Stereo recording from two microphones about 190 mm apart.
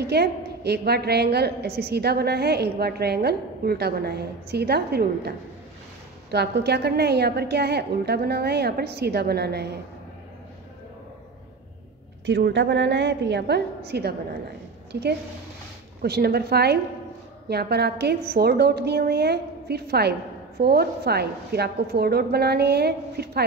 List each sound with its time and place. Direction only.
0.0 s a woman's voice: 55° right (ahead or behind)
6.3 s a woman's voice: 60° right (ahead or behind)
12.3 s a woman's voice: 65° right (ahead or behind)